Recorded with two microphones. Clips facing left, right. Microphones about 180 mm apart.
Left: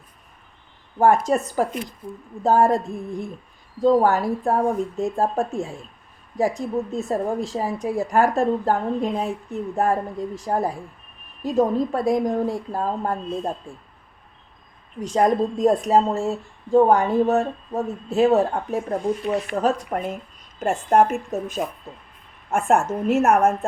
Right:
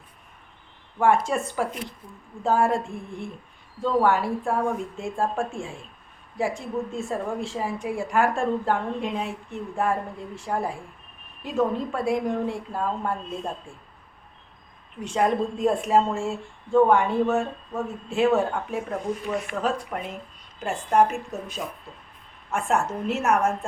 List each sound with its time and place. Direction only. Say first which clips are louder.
0.9 s a woman's voice: left 4 dB; 40° left (ahead or behind)
15.0 s a woman's voice: left 4 dB; 40° left (ahead or behind)